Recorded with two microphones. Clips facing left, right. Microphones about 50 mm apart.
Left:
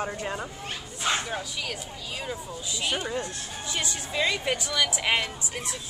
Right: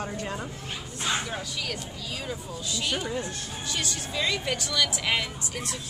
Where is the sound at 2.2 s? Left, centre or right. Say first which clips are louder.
Even; centre.